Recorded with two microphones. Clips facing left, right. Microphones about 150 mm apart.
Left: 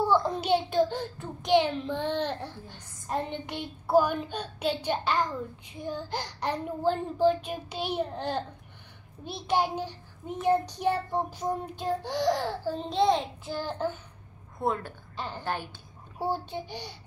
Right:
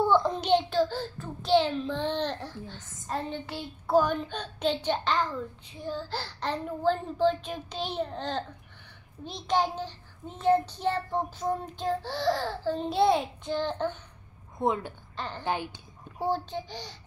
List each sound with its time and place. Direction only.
0.0 s a child's voice: 5° left (ahead or behind)
12.7 s child singing: 5° right (ahead or behind)
14.6 s a woman's voice: 15° right (ahead or behind)
15.1 s a child's voice: 10° left (ahead or behind)
15.4 s a woman's voice: 15° right (ahead or behind)
16.2 s a child's voice: 10° left (ahead or behind)